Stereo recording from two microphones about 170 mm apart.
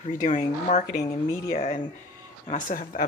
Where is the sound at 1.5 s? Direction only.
40° left (ahead or behind).